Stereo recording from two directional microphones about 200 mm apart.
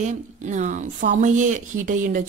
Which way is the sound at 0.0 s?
35° right (ahead or behind).